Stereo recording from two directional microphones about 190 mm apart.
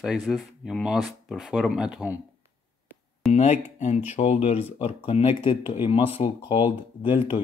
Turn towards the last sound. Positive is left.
turn(degrees=25)  # may be behind; listen again after turning